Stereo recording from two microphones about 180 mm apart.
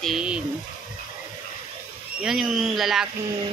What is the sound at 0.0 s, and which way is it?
Speech, 5° right (ahead or behind).